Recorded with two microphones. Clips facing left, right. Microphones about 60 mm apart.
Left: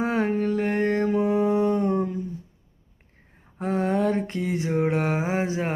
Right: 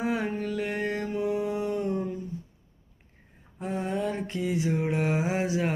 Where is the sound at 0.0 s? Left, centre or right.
Left.